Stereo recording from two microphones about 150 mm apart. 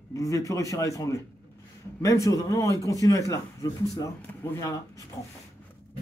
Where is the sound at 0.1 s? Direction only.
20° left (ahead or behind).